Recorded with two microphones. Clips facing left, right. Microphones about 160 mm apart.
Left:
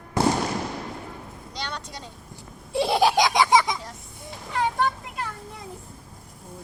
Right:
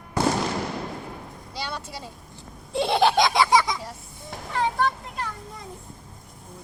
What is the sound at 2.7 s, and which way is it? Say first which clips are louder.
Baby laughter: even; 5° left (ahead or behind).